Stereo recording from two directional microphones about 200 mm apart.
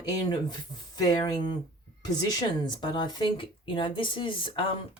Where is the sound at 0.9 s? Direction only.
20° left (ahead or behind).